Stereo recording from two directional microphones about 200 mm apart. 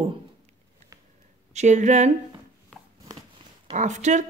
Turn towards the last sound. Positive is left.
turn(degrees=-35)  # may be behind; listen again after turning